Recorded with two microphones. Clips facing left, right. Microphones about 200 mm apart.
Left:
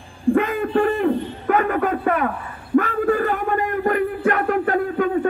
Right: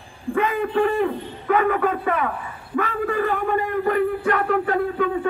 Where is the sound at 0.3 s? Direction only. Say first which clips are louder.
Left 4 dB; 50° left (ahead or behind).